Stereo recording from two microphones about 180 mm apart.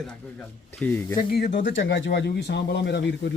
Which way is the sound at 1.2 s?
60° left (ahead or behind).